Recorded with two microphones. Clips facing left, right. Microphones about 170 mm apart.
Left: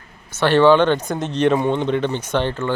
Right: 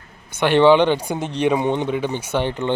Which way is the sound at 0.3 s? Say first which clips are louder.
Even; 15° right (ahead or behind).